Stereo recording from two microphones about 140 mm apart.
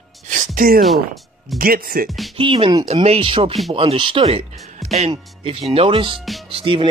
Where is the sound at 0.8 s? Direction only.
Centre (ahead or behind).